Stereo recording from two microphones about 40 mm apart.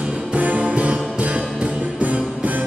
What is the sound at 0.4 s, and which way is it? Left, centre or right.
Music, right.